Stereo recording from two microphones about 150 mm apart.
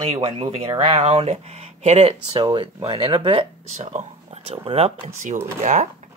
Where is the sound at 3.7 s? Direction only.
45° right (ahead or behind).